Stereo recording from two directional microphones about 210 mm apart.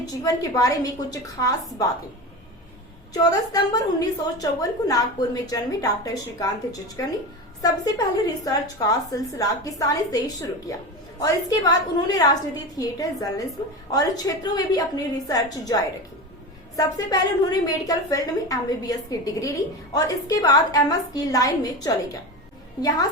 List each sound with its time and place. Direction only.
0.0 s a woman's voice: 15° left (ahead or behind)
3.1 s a woman's voice: 20° left (ahead or behind)
8.4 s a woman's voice: 15° left (ahead or behind)